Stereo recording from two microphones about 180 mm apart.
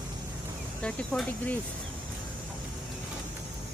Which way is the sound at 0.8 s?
5° left (ahead or behind).